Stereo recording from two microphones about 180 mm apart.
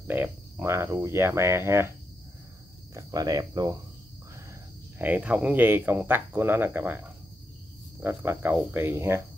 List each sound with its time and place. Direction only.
0.0 s speech: 10° right (ahead or behind)
2.9 s speech: 20° right (ahead or behind)
4.9 s speech: 10° right (ahead or behind)